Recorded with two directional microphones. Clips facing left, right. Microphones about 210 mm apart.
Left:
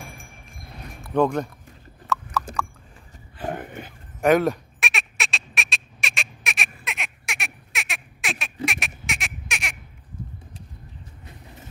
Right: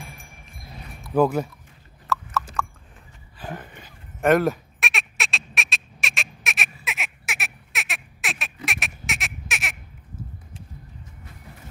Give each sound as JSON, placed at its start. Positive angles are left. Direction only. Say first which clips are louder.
{"t": 1.1, "sound": "speech", "louder": "right 1 dB", "side_deg": -5}
{"t": 2.1, "sound": "horse", "louder": "even", "side_deg": 0}
{"t": 3.3, "sound": "a sound", "louder": "left 6 dB", "side_deg": 55}
{"t": 4.2, "sound": "fowl", "louder": "even", "side_deg": 0}
{"t": 8.6, "sound": "honk", "louder": "left 4 dB", "side_deg": 0}